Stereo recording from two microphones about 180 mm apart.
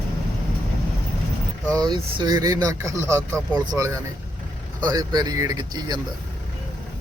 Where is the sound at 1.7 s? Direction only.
25° right (ahead or behind).